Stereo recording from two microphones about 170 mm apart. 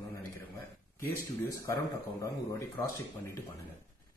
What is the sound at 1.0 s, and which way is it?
Speech, 15° left (ahead or behind).